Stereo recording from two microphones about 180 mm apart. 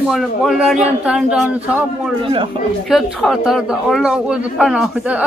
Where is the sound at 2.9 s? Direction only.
Centre (ahead or behind).